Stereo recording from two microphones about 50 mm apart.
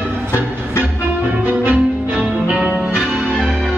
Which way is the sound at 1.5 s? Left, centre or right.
Right.